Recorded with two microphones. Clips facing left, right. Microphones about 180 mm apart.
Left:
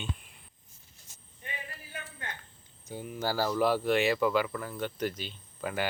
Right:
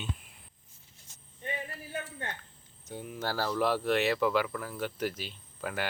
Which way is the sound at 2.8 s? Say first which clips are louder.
Left 2 dB; centre (ahead or behind).